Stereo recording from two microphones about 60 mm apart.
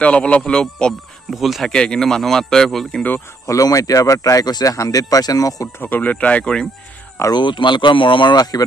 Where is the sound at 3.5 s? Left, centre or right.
Left.